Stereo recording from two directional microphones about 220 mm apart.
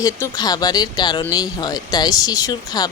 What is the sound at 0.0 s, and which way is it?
Speech, 15° left (ahead or behind).